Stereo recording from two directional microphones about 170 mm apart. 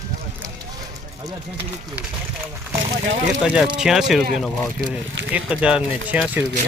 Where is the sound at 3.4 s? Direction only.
5° right (ahead or behind).